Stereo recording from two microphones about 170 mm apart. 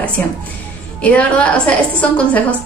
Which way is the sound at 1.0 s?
10° left (ahead or behind).